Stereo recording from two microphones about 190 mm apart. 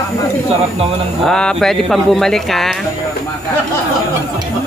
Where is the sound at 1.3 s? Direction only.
5° left (ahead or behind).